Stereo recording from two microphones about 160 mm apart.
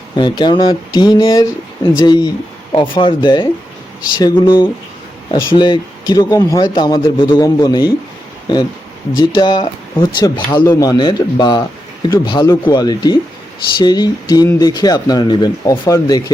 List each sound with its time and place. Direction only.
0.2 s speech: 30° left (ahead or behind)
9.3 s speech: 30° left (ahead or behind)